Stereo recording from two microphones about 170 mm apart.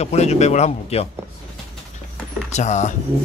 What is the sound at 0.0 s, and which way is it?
A man's voice, 40° left (ahead or behind).